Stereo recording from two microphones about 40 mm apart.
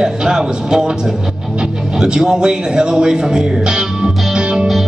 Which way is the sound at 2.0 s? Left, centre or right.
Centre.